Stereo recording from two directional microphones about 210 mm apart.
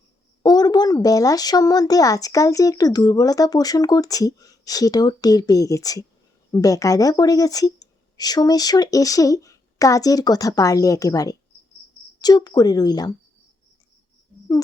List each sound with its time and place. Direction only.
0.4 s speech: 20° left (ahead or behind)